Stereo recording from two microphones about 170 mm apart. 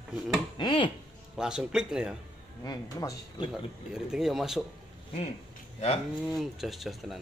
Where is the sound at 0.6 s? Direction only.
30° left (ahead or behind).